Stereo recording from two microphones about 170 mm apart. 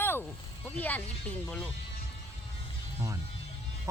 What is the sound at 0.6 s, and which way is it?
Speech, 10° left (ahead or behind).